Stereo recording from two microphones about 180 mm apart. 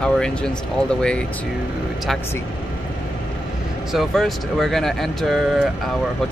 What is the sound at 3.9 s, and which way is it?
Speech, centre (ahead or behind).